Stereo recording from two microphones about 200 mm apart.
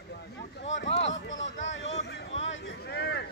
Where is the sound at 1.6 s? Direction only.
70° left (ahead or behind).